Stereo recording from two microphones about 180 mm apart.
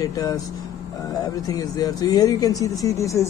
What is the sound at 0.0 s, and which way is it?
A man's voice, 20° left (ahead or behind).